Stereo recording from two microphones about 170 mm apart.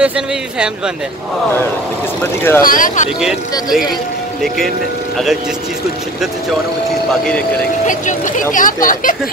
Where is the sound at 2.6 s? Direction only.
55° left (ahead or behind).